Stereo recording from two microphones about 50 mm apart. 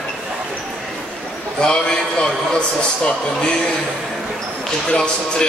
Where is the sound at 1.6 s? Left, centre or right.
Centre.